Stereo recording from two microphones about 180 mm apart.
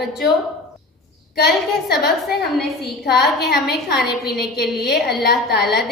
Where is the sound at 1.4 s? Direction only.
60° left (ahead or behind).